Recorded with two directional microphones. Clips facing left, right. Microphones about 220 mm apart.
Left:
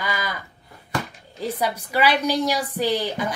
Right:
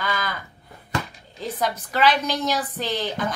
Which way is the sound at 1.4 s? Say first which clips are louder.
Left 1 dB; 10° left (ahead or behind).